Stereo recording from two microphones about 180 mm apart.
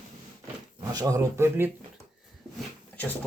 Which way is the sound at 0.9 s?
20° right (ahead or behind).